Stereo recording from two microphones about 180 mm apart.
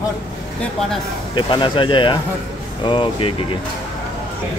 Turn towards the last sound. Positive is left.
turn(degrees=25)  # may be behind; listen again after turning